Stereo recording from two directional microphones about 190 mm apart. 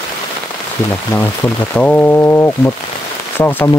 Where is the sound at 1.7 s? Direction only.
10° left (ahead or behind).